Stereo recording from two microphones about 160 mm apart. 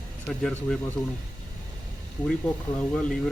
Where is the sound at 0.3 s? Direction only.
5° left (ahead or behind).